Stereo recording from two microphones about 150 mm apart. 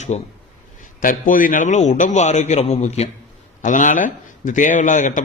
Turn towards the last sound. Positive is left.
turn(degrees=55)  # may be behind; listen again after turning